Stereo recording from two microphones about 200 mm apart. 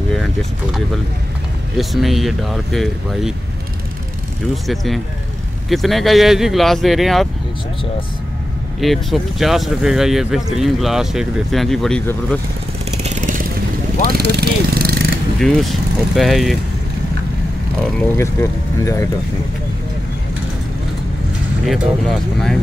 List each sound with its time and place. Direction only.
0.1 s vehicle: centre (ahead or behind)
1.8 s speech: centre (ahead or behind)
4.6 s speech: centre (ahead or behind)
8.8 s speech: centre (ahead or behind)
13.0 s vehicle: 40° right (ahead or behind)
15.3 s speech: centre (ahead or behind)
18.1 s speech: 15° left (ahead or behind)
21.6 s speech: centre (ahead or behind)